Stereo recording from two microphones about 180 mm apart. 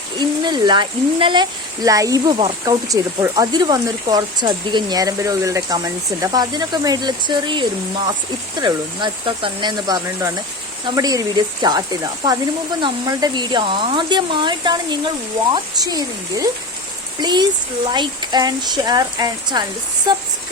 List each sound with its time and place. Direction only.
0.2 s speech: 25° right (ahead or behind)